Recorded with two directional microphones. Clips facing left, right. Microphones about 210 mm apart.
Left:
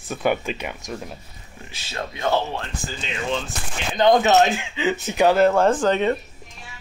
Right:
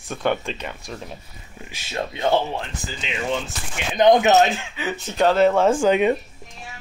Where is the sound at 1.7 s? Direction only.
20° right (ahead or behind).